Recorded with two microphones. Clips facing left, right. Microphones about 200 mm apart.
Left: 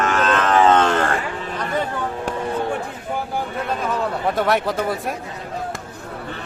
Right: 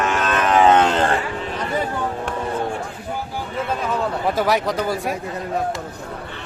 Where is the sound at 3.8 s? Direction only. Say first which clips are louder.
Even; centre (ahead or behind).